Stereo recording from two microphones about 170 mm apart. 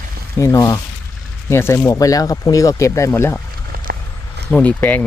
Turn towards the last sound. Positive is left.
turn(degrees=10)  # may be behind; listen again after turning